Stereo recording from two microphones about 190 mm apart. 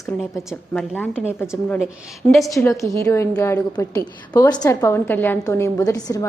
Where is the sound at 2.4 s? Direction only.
15° left (ahead or behind).